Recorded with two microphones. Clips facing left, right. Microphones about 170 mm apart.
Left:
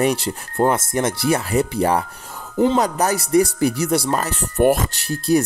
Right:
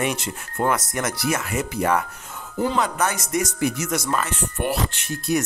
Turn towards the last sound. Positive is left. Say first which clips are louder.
# left 6 dB
turn(degrees=35)  # may be behind; listen again after turning